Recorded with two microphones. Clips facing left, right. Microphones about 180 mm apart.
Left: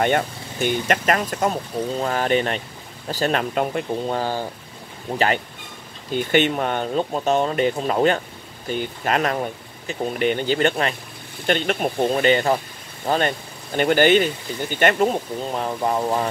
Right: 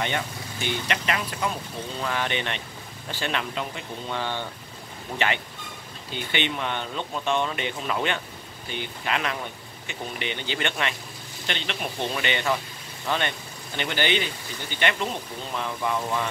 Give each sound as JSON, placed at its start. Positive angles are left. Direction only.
{"t": 0.0, "sound": "speech", "side_deg": 50}
{"t": 6.1, "sound": "speech", "side_deg": 45}